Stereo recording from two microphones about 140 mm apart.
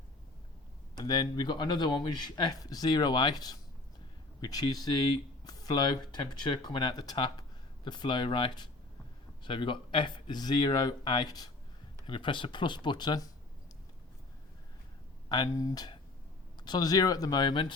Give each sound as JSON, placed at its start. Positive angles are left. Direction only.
{"t": 0.9, "sound": "speech", "side_deg": 30}
{"t": 15.3, "sound": "speech", "side_deg": 25}